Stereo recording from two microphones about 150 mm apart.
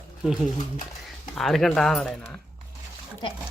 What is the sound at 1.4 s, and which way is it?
Speech, centre (ahead or behind).